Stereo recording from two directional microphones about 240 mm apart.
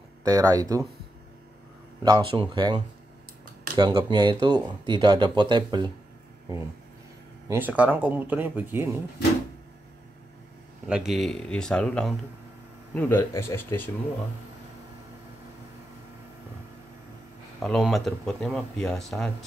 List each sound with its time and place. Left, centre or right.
0.2 s speech: centre
2.0 s speech: centre
7.4 s speech: centre
10.9 s speech: centre
17.6 s speech: centre